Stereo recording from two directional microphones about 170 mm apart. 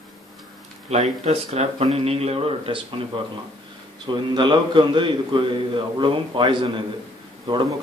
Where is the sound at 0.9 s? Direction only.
40° right (ahead or behind).